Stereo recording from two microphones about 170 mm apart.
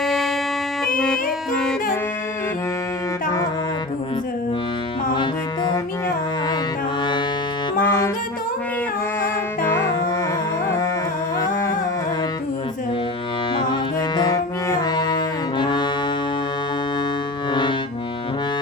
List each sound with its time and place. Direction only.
0.0 s music: centre (ahead or behind)
5.1 s music: 25° left (ahead or behind)
7.8 s saxophone: 15° left (ahead or behind)
9.2 s music: 15° left (ahead or behind)
14.2 s music: 20° left (ahead or behind)
17.5 s music: 25° left (ahead or behind)